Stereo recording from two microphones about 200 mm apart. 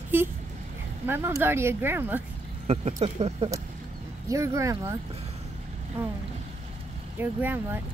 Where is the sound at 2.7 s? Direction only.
35° right (ahead or behind).